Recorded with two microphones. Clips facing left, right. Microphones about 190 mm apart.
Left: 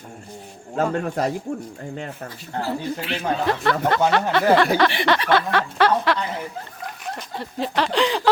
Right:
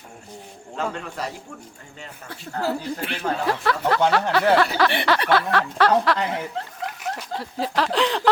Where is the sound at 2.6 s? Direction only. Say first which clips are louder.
Right 1 dB; 25° left (ahead or behind).